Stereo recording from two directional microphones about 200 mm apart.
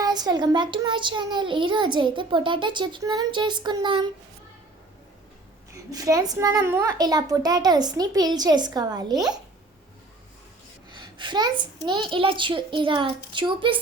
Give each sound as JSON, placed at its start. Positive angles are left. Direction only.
{"t": 0.0, "sound": "a child's voice", "side_deg": -20}
{"t": 5.7, "sound": "a child's voice", "side_deg": -15}
{"t": 10.9, "sound": "a sound", "side_deg": -25}
{"t": 11.9, "sound": "a child's voice", "side_deg": -25}